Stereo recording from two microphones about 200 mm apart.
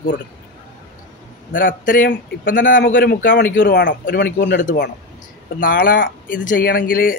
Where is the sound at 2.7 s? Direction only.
60° left (ahead or behind).